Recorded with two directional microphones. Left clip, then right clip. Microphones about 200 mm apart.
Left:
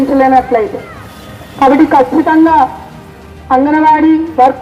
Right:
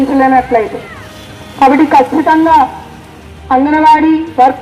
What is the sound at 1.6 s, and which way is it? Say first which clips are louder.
A woman's voice: even; 35° right (ahead or behind).